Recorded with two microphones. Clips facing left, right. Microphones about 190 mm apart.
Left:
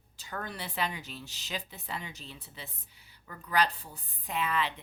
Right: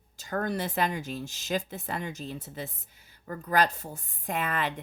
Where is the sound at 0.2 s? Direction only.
45° right (ahead or behind).